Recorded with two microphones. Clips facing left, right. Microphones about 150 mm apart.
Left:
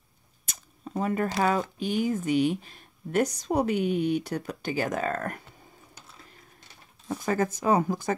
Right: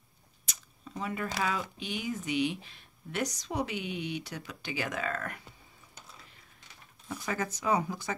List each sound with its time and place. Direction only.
0.5 s a sound: 50° left (ahead or behind)
1.4 s speech: 45° left (ahead or behind)
7.1 s speech: 45° left (ahead or behind)